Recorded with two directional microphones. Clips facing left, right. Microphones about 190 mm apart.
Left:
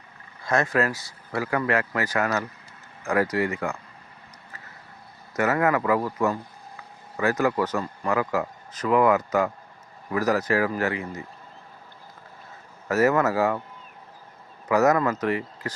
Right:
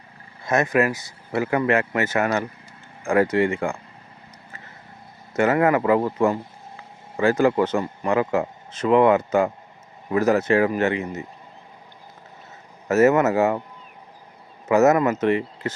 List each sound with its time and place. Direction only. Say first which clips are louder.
0.4 s speech: right 3 dB; 20° right (ahead or behind)
5.3 s speech: right 4 dB; 25° right (ahead or behind)
12.9 s speech: right 4 dB; 25° right (ahead or behind)
14.7 s speech: right 4 dB; 25° right (ahead or behind)